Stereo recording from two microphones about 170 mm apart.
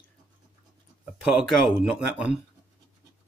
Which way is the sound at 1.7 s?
Centre (ahead or behind).